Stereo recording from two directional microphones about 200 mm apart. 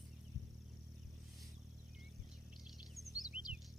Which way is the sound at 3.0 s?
15° right (ahead or behind).